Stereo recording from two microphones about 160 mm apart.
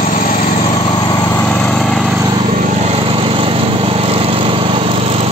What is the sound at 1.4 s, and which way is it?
Lawn mower, 5° left (ahead or behind).